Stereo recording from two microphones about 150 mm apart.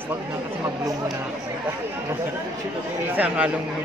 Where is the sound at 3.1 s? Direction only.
10° right (ahead or behind).